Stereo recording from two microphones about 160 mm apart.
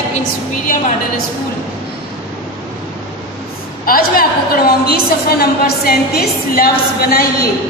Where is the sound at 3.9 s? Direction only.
65° left (ahead or behind).